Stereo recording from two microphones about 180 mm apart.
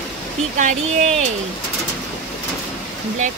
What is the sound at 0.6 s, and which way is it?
Speech, 45° right (ahead or behind).